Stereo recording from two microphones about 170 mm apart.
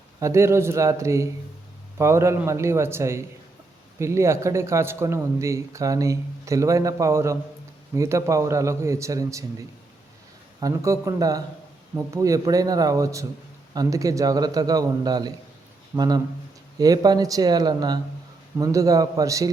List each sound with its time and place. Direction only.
0.2 s a man's voice: 15° right (ahead or behind)